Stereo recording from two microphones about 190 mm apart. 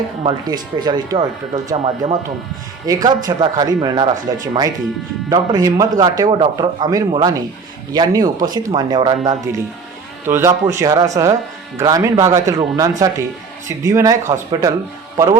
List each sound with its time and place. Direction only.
0.2 s a man's voice: 25° right (ahead or behind)
10.2 s speech: 10° right (ahead or behind)